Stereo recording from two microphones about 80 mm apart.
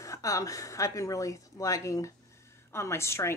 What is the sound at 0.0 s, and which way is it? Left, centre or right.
A woman's voice, left.